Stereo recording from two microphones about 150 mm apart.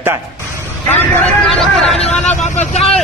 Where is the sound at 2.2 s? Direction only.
50° left (ahead or behind).